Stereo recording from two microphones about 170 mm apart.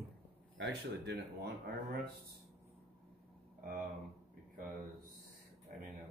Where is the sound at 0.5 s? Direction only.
85° right.